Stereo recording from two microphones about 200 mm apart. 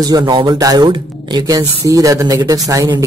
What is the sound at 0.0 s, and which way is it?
Speech, 20° right (ahead or behind).